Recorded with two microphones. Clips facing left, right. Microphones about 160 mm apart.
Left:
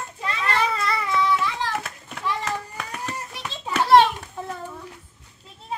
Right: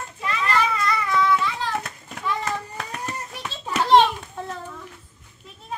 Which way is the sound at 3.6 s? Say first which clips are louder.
Left 1 dB; 5° left (ahead or behind).